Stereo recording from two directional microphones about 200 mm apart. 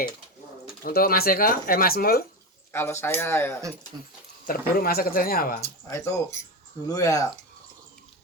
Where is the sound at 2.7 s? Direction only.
10° left (ahead or behind).